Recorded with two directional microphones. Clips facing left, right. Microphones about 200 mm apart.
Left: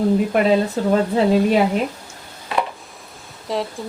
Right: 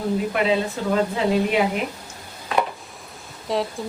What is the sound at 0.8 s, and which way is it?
Speech, 40° left (ahead or behind).